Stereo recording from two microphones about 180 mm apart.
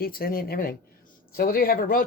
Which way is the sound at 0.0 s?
55° left (ahead or behind).